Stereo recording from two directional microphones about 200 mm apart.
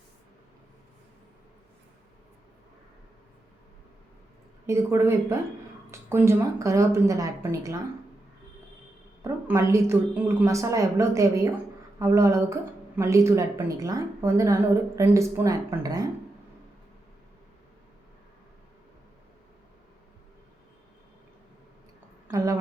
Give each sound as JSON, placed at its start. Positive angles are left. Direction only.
{"t": 4.6, "sound": "speech", "side_deg": -15}
{"t": 9.2, "sound": "speech", "side_deg": -15}
{"t": 22.3, "sound": "a woman's voice", "side_deg": -15}